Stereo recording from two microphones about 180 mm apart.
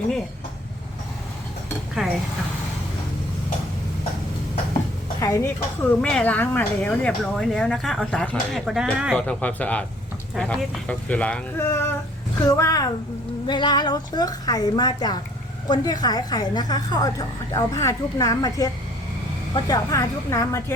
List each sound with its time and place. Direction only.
2.0 s speech: centre (ahead or behind)
5.2 s speech: 15° left (ahead or behind)
5.9 s speech: 5° left (ahead or behind)
9.1 s a woman's voice: 5° left (ahead or behind)